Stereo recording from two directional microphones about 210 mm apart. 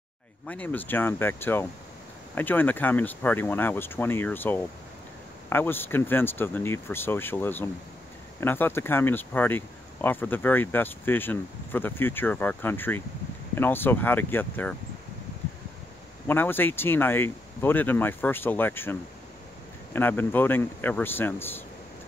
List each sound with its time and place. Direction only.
0.5 s speech: 5° left (ahead or behind)
16.3 s speech: 10° left (ahead or behind)